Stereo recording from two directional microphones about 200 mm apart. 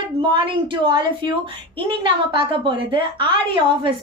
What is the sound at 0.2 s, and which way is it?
A woman's voice, 25° right (ahead or behind).